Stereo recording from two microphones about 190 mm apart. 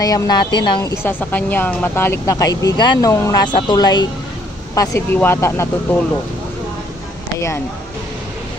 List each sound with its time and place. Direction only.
0.0 s speech: 20° left (ahead or behind)
1.0 s speech: 10° left (ahead or behind)